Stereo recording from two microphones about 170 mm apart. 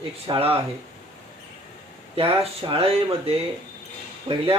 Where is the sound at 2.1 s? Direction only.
35° right (ahead or behind).